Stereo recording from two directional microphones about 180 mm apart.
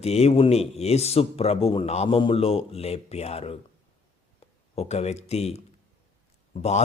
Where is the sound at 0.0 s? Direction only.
35° left (ahead or behind).